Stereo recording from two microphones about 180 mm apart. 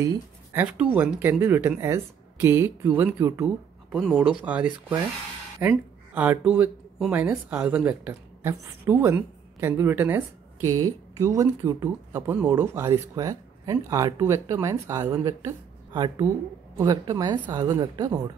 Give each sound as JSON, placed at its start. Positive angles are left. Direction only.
{"t": 0.0, "sound": "speech", "side_deg": -15}
{"t": 3.9, "sound": "a woman's voice", "side_deg": 0}